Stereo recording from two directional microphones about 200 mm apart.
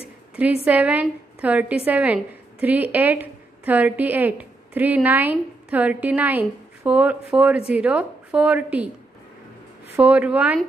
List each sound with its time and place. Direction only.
0.7 s a woman's voice: 5° right (ahead or behind)
9.9 s a woman's voice: 5° right (ahead or behind)